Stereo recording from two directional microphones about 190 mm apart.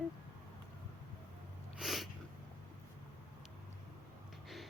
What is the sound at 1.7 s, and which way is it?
Snort, centre (ahead or behind).